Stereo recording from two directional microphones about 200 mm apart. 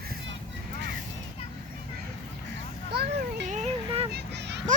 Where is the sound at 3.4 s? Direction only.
35° right (ahead or behind).